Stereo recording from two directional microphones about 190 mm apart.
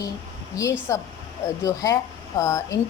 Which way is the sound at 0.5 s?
15° left (ahead or behind).